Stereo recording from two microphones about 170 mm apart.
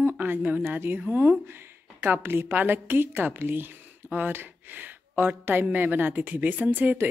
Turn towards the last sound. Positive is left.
turn(degrees=-10)  # may be behind; listen again after turning